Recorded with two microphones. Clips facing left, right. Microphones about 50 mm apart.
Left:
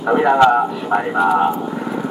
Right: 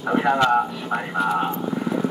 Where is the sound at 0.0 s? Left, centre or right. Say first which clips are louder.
Left 7 dB; centre.